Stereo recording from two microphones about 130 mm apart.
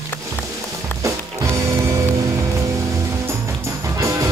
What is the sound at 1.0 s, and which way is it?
Music, 20° right (ahead or behind).